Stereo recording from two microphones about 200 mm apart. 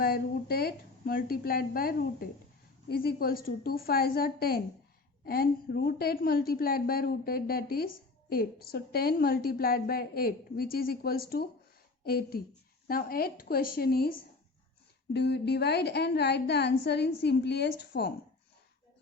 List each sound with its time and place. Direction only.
0.0 s a woman's voice: 50° left (ahead or behind)